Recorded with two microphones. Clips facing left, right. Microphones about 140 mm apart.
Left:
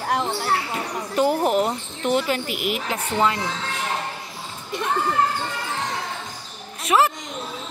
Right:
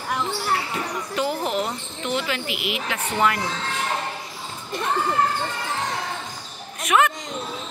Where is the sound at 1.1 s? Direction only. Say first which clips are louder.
Left 6 dB; 45° left (ahead or behind).